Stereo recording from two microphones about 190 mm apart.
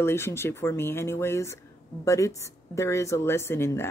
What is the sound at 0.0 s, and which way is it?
Speech, 15° left (ahead or behind).